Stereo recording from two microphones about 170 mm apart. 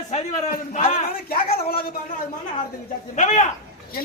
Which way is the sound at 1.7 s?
60° left (ahead or behind).